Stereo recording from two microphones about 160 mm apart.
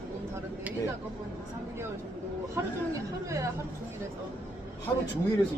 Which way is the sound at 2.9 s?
20° right (ahead or behind).